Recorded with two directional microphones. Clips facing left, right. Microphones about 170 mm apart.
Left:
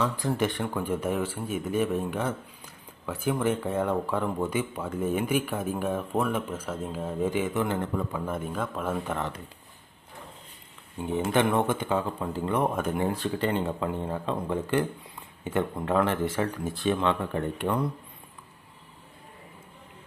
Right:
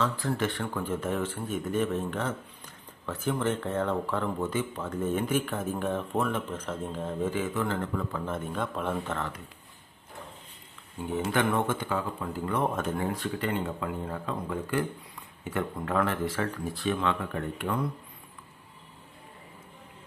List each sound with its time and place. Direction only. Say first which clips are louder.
0.0 s speech: left 2 dB; 15° left (ahead or behind)
11.3 s speech: left 3 dB; 20° left (ahead or behind)
12.5 s speech: left 2 dB; 15° left (ahead or behind)
13.1 s speech: left 3 dB; 30° left (ahead or behind)